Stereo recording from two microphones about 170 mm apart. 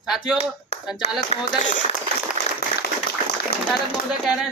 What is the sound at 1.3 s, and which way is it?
Speech, 40° left (ahead or behind).